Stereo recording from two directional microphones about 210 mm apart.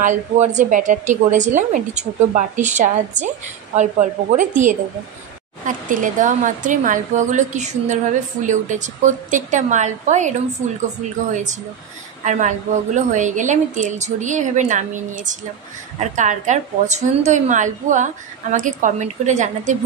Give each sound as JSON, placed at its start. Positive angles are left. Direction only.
{"t": 0.0, "sound": "a woman's voice", "side_deg": -35}
{"t": 12.3, "sound": "a woman's voice", "side_deg": -35}